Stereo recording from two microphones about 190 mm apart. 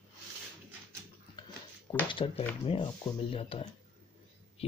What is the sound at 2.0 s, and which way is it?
Speech, 25° left (ahead or behind).